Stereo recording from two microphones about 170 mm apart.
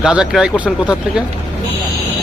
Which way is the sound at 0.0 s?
5° right (ahead or behind).